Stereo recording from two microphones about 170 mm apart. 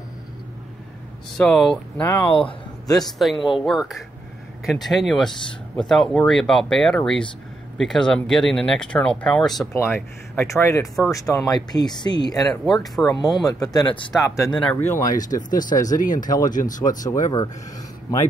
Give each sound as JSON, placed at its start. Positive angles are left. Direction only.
{"t": 1.4, "sound": "speech", "side_deg": 5}
{"t": 3.0, "sound": "speech", "side_deg": 0}
{"t": 9.7, "sound": "speech", "side_deg": 15}
{"t": 12.7, "sound": "speech", "side_deg": 0}
{"t": 13.1, "sound": "speech", "side_deg": 20}
{"t": 14.5, "sound": "speech", "side_deg": 5}
{"t": 15.1, "sound": "speech", "side_deg": 50}
{"t": 16.3, "sound": "speech", "side_deg": 25}
{"t": 16.5, "sound": "speech", "side_deg": 50}
{"t": 16.8, "sound": "speech", "side_deg": 20}